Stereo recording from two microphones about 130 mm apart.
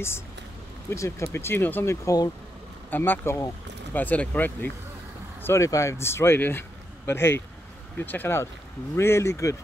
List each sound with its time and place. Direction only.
0.8 s speech: 25° left (ahead or behind)